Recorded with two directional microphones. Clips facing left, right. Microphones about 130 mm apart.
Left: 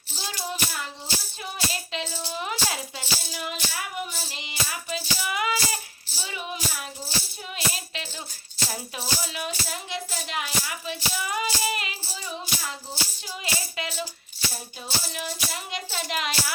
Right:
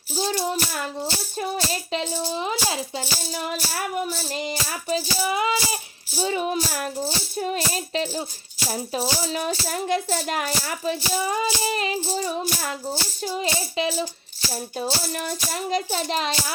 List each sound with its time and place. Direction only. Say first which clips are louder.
0.3 s speech: right 6 dB; 50° right (ahead or behind)
2.3 s speech: right 1 dB; 20° right (ahead or behind)
3.0 s speech: right 4 dB; 45° right (ahead or behind); by 5.8 s 20° right (ahead or behind)
6.1 s speech: right 11 dB; 40° right (ahead or behind)
12.1 s speech: right 9 dB; 45° right (ahead or behind); by 14.1 s 25° right (ahead or behind)
14.8 s speech: right 6 dB; 50° right (ahead or behind); by 16.3 s 35° right (ahead or behind)